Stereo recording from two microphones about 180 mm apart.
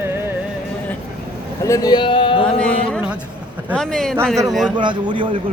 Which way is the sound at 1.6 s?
20° left (ahead or behind).